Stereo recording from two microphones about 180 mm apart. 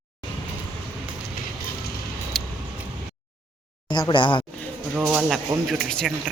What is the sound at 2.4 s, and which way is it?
Vehicle, centre (ahead or behind).